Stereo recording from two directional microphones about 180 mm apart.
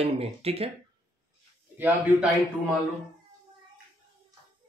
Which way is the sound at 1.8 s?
5° right (ahead or behind).